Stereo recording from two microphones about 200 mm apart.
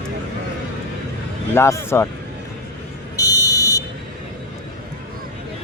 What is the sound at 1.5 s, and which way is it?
Speech, 10° left (ahead or behind).